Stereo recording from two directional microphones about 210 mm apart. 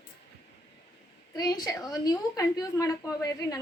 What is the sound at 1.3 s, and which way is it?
Speech, 20° left (ahead or behind).